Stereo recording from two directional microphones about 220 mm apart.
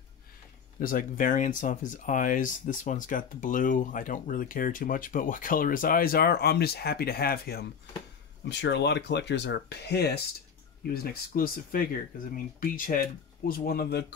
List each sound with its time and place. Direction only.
0.7 s speech: 40° left (ahead or behind)